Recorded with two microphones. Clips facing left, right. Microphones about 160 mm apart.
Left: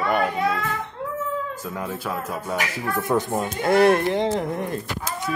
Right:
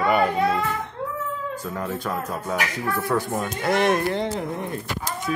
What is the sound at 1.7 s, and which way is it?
Speech, 10° left (ahead or behind).